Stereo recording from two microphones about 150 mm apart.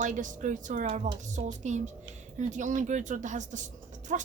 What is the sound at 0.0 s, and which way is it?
A woman's voice, 55° right (ahead or behind).